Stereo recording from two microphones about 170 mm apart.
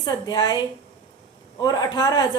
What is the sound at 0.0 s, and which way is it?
Speech, 25° left (ahead or behind).